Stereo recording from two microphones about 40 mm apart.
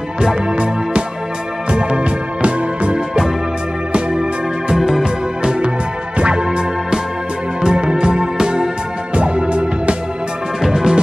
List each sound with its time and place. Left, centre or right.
0.2 s music: right
4.1 s music: centre
4.7 s music: centre
5.0 s music: right
6.4 s music: centre
10.7 s music: centre